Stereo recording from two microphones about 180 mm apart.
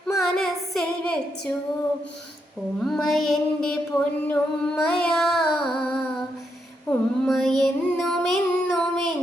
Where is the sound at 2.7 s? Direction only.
Centre (ahead or behind).